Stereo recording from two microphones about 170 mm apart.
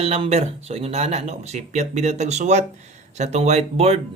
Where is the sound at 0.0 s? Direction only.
35° right (ahead or behind).